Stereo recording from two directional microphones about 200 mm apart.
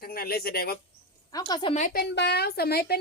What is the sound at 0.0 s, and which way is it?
Speech, 50° left (ahead or behind).